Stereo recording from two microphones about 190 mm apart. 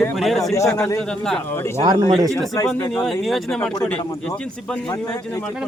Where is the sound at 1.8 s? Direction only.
20° right (ahead or behind).